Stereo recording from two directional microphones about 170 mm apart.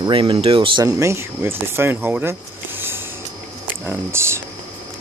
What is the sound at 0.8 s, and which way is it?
Speech, 15° right (ahead or behind).